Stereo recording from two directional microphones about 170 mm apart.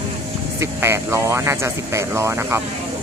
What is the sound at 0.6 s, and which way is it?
Speech, 15° right (ahead or behind).